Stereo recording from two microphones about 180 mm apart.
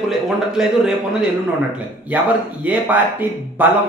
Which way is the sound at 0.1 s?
5° right (ahead or behind).